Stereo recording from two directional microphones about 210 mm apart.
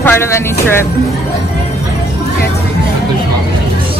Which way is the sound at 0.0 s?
10° left (ahead or behind).